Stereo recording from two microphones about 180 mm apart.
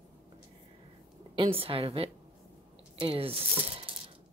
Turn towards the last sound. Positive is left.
turn(degrees=-30)  # may be behind; listen again after turning